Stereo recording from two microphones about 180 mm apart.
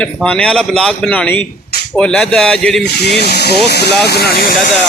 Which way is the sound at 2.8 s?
65° left (ahead or behind).